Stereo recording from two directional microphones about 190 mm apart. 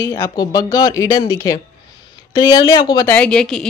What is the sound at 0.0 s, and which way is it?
A woman's voice, 15° left (ahead or behind).